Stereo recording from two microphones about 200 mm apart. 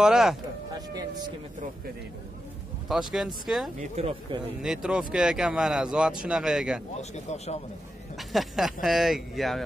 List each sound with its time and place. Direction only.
0.0 s speech: centre (ahead or behind)
0.7 s speech: 20° right (ahead or behind)
2.9 s speech: centre (ahead or behind)
3.9 s speech: 30° right (ahead or behind)
4.6 s speech: 5° right (ahead or behind)
7.0 s speech: 35° left (ahead or behind)
8.2 s speech: centre (ahead or behind)